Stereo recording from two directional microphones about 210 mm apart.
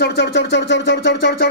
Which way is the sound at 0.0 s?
55° left (ahead or behind).